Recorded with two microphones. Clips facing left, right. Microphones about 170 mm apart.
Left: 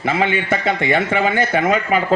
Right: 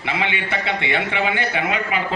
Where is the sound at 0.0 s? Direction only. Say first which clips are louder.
Left 6 dB; 45° left (ahead or behind).